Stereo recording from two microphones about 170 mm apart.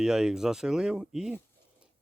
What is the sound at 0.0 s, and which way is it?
Speech, 5° right (ahead or behind).